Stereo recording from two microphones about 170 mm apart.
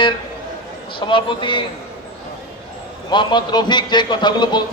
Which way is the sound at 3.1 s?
25° left (ahead or behind).